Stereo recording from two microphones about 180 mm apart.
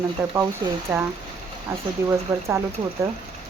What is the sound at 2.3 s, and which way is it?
Speech, 15° right (ahead or behind).